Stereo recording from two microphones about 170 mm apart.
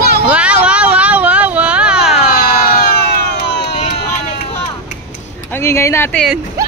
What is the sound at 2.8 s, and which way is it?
Emergency vehicle, 70° left (ahead or behind).